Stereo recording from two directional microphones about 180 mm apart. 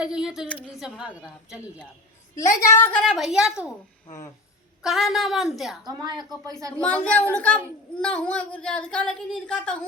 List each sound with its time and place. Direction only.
0.0 s speech: 5° right (ahead or behind)
2.3 s a woman's voice: 15° left (ahead or behind)
3.0 s speech: centre (ahead or behind)
4.8 s speech: centre (ahead or behind)
5.8 s a woman's voice: 25° right (ahead or behind)
6.8 s a woman's voice: 10° left (ahead or behind)